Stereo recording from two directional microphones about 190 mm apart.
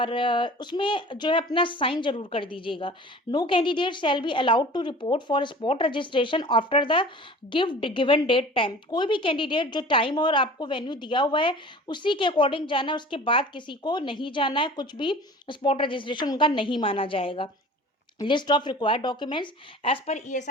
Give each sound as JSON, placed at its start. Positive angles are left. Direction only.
{"t": 0.0, "sound": "a woman's voice", "side_deg": 25}